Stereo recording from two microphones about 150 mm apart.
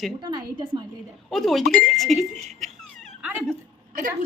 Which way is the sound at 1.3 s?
Centre (ahead or behind).